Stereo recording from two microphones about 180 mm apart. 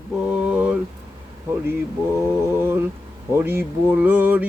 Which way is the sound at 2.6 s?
10° right (ahead or behind).